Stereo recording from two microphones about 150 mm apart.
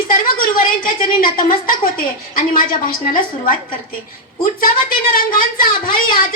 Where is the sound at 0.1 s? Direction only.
65° left (ahead or behind).